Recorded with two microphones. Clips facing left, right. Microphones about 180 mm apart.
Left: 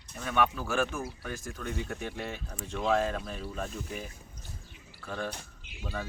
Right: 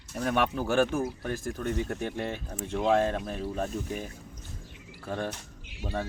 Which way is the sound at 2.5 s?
30° right (ahead or behind).